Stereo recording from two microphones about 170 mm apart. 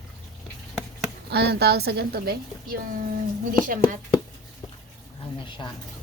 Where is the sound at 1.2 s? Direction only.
75° right (ahead or behind).